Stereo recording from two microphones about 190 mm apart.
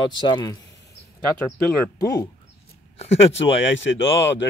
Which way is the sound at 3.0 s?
35° left (ahead or behind).